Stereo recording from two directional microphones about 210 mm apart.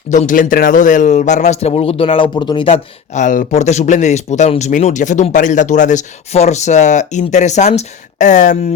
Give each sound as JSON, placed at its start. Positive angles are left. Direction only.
{"t": 0.1, "sound": "a man's voice", "side_deg": 40}